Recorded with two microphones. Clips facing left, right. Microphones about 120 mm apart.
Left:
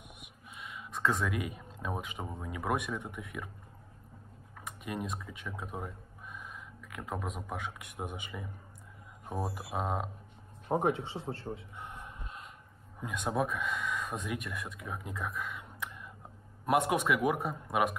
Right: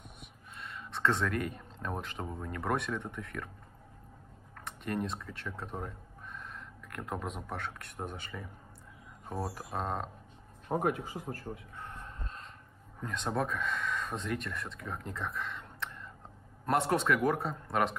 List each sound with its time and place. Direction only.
0.6 s speech: 5° left (ahead or behind)
4.6 s a man's voice: 5° left (ahead or behind)
10.7 s a sound: 25° left (ahead or behind)
13.0 s a man's voice: 10° left (ahead or behind)